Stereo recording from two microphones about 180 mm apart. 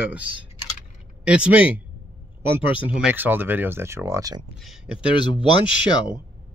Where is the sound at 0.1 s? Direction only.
10° right (ahead or behind).